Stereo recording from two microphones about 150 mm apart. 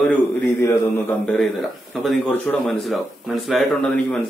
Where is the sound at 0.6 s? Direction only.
20° left (ahead or behind).